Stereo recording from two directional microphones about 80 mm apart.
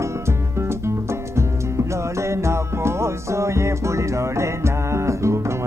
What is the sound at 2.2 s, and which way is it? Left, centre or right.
Music, right.